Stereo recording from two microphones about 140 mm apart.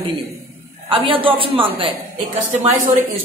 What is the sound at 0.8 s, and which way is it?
A woman's voice, 40° right (ahead or behind).